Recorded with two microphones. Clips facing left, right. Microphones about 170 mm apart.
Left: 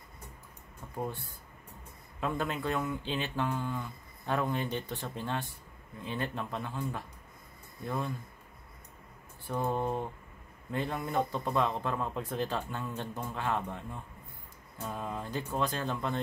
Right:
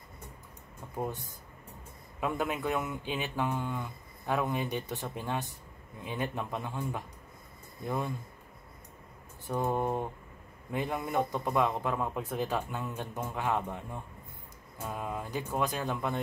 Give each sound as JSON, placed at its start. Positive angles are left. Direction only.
{"t": 0.9, "sound": "a man's voice", "side_deg": -15}
{"t": 9.5, "sound": "a man's voice", "side_deg": -15}